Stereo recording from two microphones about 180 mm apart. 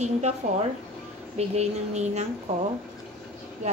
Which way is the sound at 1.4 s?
40° right (ahead or behind).